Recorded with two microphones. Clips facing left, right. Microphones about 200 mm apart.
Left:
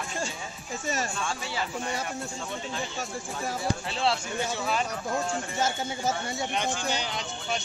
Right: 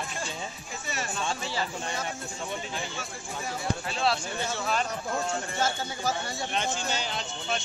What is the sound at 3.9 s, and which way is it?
Speech, 25° left (ahead or behind).